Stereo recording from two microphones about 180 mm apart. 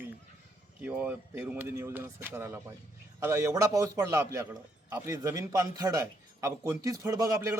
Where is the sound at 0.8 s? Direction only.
10° right (ahead or behind).